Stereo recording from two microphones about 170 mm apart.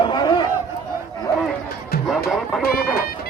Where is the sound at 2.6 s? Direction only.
65° left (ahead or behind).